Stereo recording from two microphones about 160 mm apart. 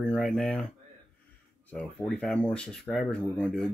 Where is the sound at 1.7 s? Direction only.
5° left (ahead or behind).